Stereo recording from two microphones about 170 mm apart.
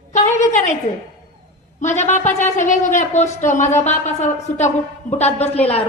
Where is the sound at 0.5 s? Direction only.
45° left (ahead or behind).